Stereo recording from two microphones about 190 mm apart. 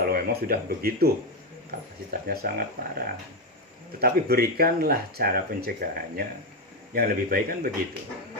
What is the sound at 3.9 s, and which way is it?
Speech, 55° right (ahead or behind).